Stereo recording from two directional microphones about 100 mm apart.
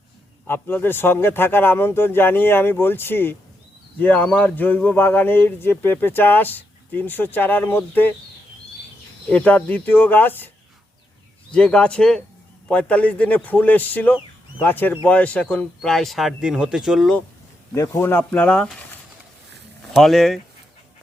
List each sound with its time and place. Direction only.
0.4 s speech: 20° left (ahead or behind)
9.3 s speech: 15° left (ahead or behind)
11.5 s a man's voice: 10° left (ahead or behind); by 17.1 s 5° right (ahead or behind)
17.7 s a man's voice: 25° left (ahead or behind); by 18.7 s 10° left (ahead or behind)
19.9 s speech: centre (ahead or behind)